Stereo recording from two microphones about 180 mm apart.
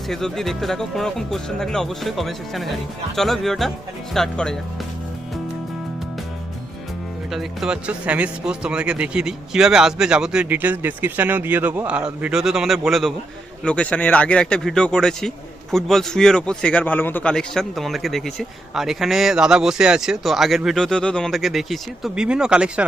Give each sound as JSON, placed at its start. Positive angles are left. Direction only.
{"t": 0.1, "sound": "a man's voice", "side_deg": 0}
{"t": 7.3, "sound": "a man's voice", "side_deg": 0}